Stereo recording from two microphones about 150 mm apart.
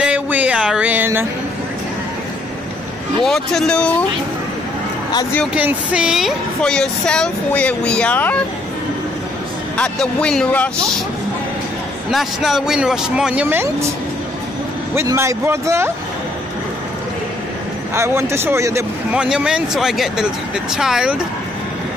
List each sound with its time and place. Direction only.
0.0 s a sound: 10° right (ahead or behind)
3.3 s speech: 5° left (ahead or behind)
5.5 s speech: 10° right (ahead or behind); by 8.5 s 10° left (ahead or behind)
9.8 s speech: 5° left (ahead or behind)
12.1 s speech: centre (ahead or behind); by 13.9 s 15° right (ahead or behind)
15.0 s a man's voice: 20° right (ahead or behind)
17.9 s a man's voice: 20° right (ahead or behind)
19.1 s speech: 5° right (ahead or behind)